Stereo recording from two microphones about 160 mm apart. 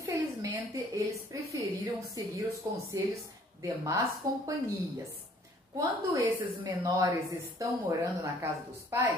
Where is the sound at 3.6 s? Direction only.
20° right (ahead or behind).